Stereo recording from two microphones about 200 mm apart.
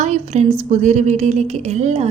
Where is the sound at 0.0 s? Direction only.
35° right (ahead or behind).